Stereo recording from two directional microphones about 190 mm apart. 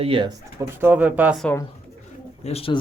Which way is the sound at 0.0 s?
30° right (ahead or behind).